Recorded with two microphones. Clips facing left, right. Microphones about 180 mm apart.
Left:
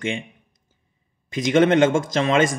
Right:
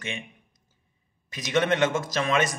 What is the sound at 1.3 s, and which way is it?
Speech, 25° left (ahead or behind).